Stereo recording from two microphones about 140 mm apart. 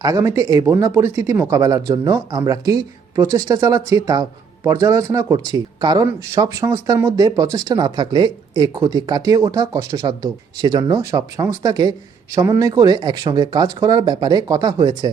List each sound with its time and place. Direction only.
0.0 s speech: 25° right (ahead or behind)